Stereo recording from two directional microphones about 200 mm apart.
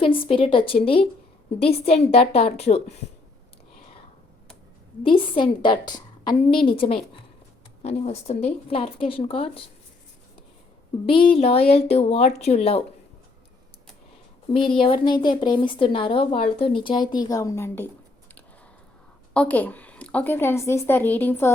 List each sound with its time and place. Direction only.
0.0 s speech: 25° left (ahead or behind)
5.0 s speech: 25° left (ahead or behind)
11.0 s speech: 25° left (ahead or behind)
14.5 s speech: 25° left (ahead or behind)
19.3 s a woman's voice: 5° left (ahead or behind)